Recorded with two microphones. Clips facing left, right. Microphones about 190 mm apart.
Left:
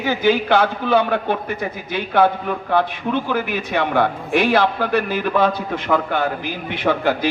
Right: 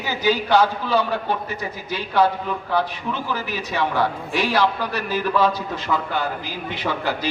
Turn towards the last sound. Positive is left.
turn(degrees=55)  # may be behind; listen again after turning